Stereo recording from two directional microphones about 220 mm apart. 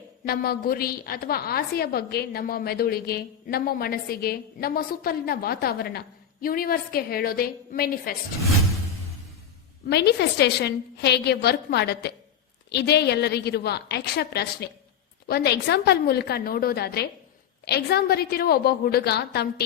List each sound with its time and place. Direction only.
0.3 s a woman's voice: 45° left (ahead or behind)
9.8 s a woman's voice: 50° left (ahead or behind)